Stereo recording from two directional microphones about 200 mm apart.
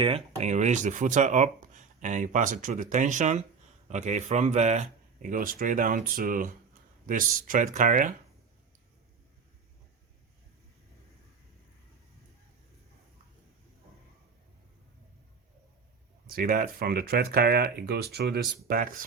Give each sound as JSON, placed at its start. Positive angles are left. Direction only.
{"t": 0.3, "sound": "speech", "side_deg": -35}
{"t": 16.2, "sound": "speech", "side_deg": -45}